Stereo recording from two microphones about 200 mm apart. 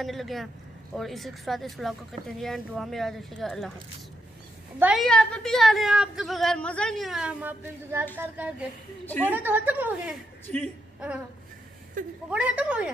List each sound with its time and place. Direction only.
0.0 s a woman's voice: centre (ahead or behind)
4.7 s a woman's voice: 5° right (ahead or behind)
10.4 s speech: 10° left (ahead or behind)
12.0 s speech: 40° right (ahead or behind)
12.3 s a woman's voice: 5° right (ahead or behind)